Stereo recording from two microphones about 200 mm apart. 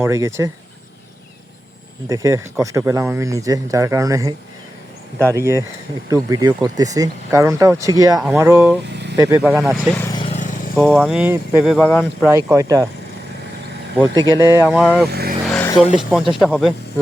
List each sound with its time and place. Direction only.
0.0 s speech: 15° right (ahead or behind)
2.0 s speech: 15° right (ahead or behind)
5.4 s speech: 15° right (ahead or behind)
8.9 s vehicle: 60° right (ahead or behind)
9.1 s speech: 15° right (ahead or behind)
9.4 s speech: centre (ahead or behind)
10.1 s vehicle: 25° left (ahead or behind)
10.8 s speech: centre (ahead or behind)
12.3 s speech: 15° right (ahead or behind)
14.1 s speech: 20° right (ahead or behind)
14.7 s speech: centre (ahead or behind)
15.0 s speech: 50° right (ahead or behind)
15.4 s vehicle: 5° left (ahead or behind)
16.3 s speech: centre (ahead or behind)